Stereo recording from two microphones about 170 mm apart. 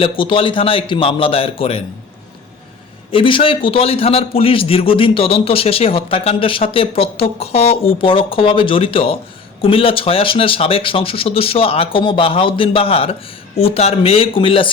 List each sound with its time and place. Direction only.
0.0 s a man's voice: 30° left (ahead or behind)
3.1 s a man's voice: 30° left (ahead or behind)